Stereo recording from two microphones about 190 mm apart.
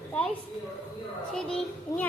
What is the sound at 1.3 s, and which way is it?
Speech, 5° left (ahead or behind).